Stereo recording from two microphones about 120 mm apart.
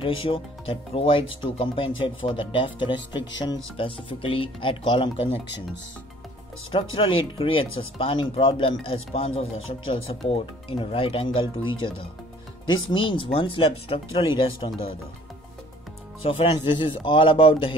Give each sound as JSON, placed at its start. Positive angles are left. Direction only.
{"t": 0.0, "sound": "speech", "side_deg": 45}
{"t": 6.7, "sound": "speech", "side_deg": 50}
{"t": 16.2, "sound": "speech", "side_deg": 50}
{"t": 16.5, "sound": "speech", "side_deg": 40}